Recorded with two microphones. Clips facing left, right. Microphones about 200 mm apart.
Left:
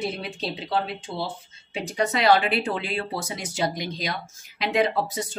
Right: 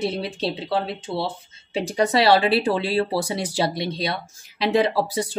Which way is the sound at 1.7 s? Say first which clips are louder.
Right 5 dB; 35° right (ahead or behind).